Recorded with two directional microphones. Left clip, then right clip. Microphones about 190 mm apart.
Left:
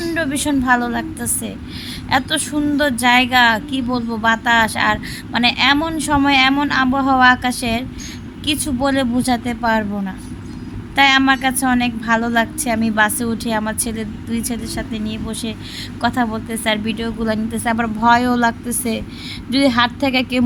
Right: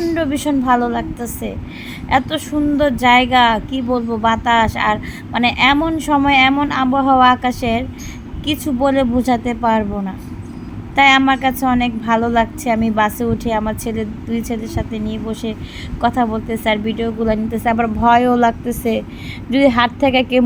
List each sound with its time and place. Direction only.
0.1 s speech: 10° right (ahead or behind)